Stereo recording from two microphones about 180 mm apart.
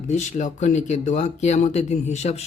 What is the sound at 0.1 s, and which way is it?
Speech, 40° left (ahead or behind).